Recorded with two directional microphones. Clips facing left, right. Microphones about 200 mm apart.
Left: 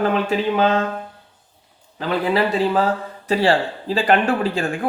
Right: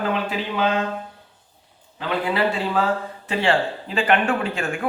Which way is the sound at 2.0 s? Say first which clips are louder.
Left 3 dB; 40° left (ahead or behind).